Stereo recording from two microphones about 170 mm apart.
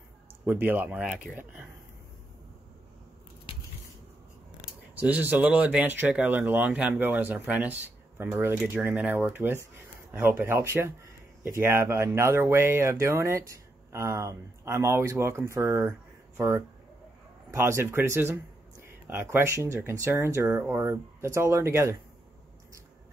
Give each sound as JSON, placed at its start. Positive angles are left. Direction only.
{"t": 0.5, "sound": "speech", "side_deg": -10}
{"t": 4.9, "sound": "speech", "side_deg": -10}